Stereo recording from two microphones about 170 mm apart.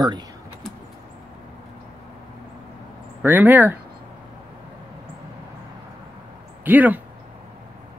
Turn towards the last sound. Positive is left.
turn(degrees=-10)  # may be behind; listen again after turning